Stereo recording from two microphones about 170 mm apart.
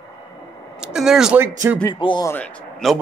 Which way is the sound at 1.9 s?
25° left (ahead or behind).